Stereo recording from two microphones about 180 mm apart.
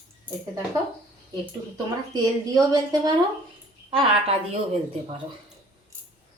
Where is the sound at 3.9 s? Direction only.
30° right (ahead or behind).